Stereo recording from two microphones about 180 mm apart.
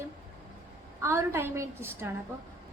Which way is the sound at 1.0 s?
15° right (ahead or behind).